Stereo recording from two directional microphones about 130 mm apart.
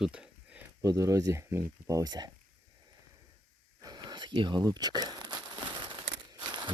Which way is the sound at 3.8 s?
30° right (ahead or behind).